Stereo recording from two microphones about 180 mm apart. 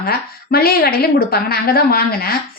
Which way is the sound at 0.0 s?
60° left (ahead or behind).